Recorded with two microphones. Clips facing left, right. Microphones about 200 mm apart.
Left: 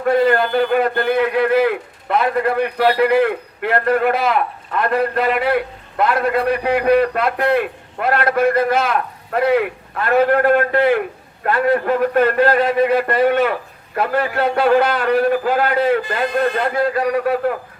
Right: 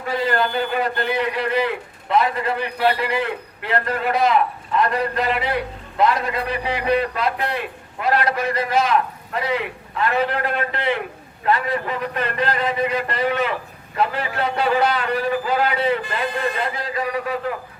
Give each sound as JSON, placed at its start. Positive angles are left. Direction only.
{"t": 0.1, "sound": "a man's voice", "side_deg": 55}